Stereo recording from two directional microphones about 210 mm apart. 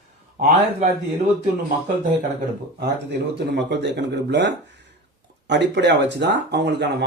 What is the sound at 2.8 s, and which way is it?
Speech, 55° right (ahead or behind).